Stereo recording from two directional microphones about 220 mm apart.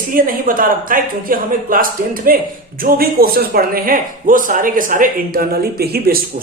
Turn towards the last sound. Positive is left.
turn(degrees=-45)  # may be behind; listen again after turning